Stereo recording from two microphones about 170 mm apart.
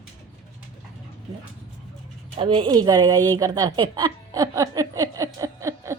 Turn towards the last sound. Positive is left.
turn(degrees=-20)  # may be behind; listen again after turning